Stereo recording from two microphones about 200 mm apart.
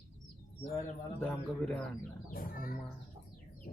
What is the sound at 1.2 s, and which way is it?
Speech, 5° left (ahead or behind).